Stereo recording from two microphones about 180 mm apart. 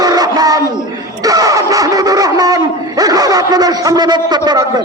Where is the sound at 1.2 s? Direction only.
20° right (ahead or behind).